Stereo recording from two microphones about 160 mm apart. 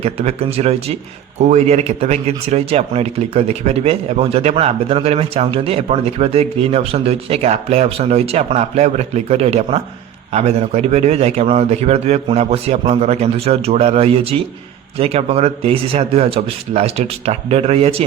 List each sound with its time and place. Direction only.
0.0 s a man's voice: 40° right (ahead or behind)